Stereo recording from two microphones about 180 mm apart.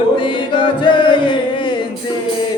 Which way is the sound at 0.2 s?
25° left (ahead or behind).